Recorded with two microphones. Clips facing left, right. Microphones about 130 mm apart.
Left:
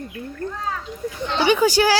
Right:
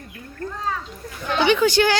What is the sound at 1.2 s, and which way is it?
Speech, 25° left (ahead or behind).